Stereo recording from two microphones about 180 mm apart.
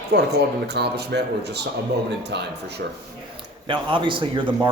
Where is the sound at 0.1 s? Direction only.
65° right (ahead or behind).